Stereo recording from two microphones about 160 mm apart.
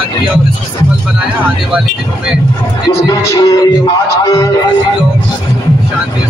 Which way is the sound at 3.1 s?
20° left (ahead or behind).